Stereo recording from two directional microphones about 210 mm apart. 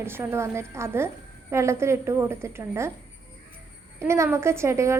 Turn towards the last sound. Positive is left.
turn(degrees=-15)  # may be behind; listen again after turning